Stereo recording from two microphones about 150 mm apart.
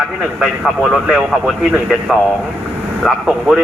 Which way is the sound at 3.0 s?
Centre (ahead or behind).